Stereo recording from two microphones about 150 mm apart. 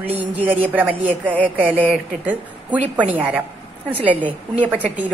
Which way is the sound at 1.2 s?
5° left (ahead or behind).